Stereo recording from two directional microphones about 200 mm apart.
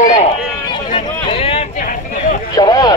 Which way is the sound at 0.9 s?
30° left (ahead or behind).